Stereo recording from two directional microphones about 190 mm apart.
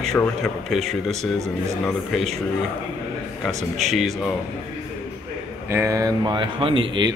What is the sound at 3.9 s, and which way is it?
Speech, centre (ahead or behind).